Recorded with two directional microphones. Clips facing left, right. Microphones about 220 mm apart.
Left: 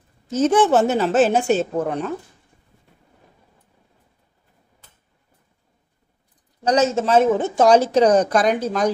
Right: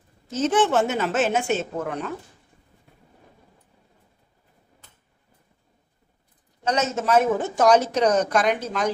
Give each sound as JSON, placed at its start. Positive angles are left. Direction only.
{"t": 0.3, "sound": "a woman's voice", "side_deg": 40}
{"t": 6.6, "sound": "a woman's voice", "side_deg": 35}